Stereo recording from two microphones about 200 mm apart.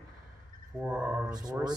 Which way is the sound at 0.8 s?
5° right (ahead or behind).